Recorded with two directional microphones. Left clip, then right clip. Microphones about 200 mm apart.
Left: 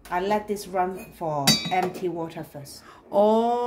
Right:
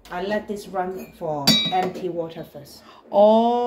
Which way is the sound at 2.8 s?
25° left (ahead or behind).